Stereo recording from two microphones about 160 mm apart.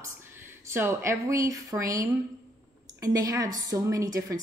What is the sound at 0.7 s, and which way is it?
A woman's voice, 15° right (ahead or behind).